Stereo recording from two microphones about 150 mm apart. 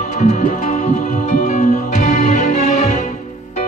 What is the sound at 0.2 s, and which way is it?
Music, 55° left (ahead or behind).